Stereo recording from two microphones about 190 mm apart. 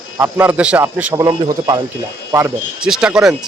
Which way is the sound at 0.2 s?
10° right (ahead or behind).